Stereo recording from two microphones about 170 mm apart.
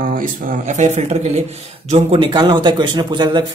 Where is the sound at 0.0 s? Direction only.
55° right (ahead or behind).